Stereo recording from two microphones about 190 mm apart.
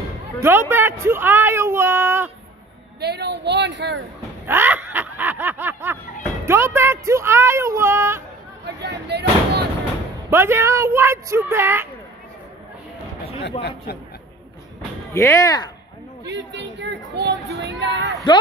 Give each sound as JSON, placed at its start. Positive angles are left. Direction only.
{"t": 0.4, "sound": "speech", "side_deg": -10}
{"t": 3.0, "sound": "a woman's voice", "side_deg": -60}
{"t": 4.5, "sound": "speech", "side_deg": -10}
{"t": 4.9, "sound": "snicker", "side_deg": -10}
{"t": 6.4, "sound": "speech", "side_deg": -15}
{"t": 8.6, "sound": "a sound", "side_deg": -65}
{"t": 10.3, "sound": "speech", "side_deg": -15}
{"t": 13.6, "sound": "speech", "side_deg": 60}
{"t": 15.1, "sound": "speech", "side_deg": 15}
{"t": 16.3, "sound": "a woman's voice", "side_deg": -65}
{"t": 18.3, "sound": "a man's voice", "side_deg": 25}